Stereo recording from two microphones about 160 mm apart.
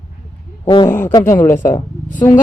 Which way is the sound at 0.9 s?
10° left (ahead or behind).